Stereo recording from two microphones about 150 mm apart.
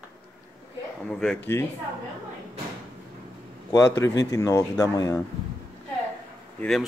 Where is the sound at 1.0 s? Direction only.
5° left (ahead or behind).